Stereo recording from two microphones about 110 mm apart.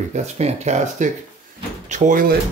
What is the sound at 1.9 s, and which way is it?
Speech, 90° right.